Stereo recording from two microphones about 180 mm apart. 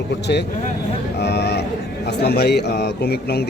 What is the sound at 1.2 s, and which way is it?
Vehicle, 65° left (ahead or behind).